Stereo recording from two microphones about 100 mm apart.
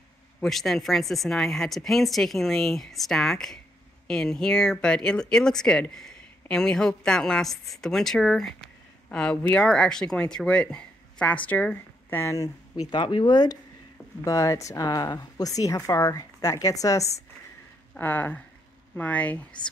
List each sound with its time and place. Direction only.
0.4 s a woman's voice: centre (ahead or behind); by 12.4 s 30° left (ahead or behind)
12.9 s speech: 50° left (ahead or behind)
14.2 s speech: 35° left (ahead or behind)
17.9 s speech: 20° left (ahead or behind)